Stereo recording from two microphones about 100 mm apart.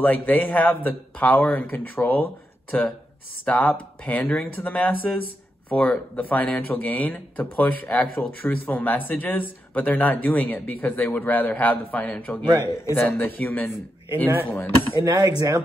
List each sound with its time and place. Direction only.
0.0 s speech: 15° left (ahead or behind)
3.4 s speech: 15° left (ahead or behind)
12.4 s speech: 40° right (ahead or behind)
12.9 s speech: 20° left (ahead or behind)
15.0 s speech: 40° right (ahead or behind)